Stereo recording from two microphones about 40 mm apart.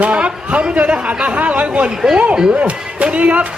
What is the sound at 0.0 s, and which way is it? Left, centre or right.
A man's voice, right.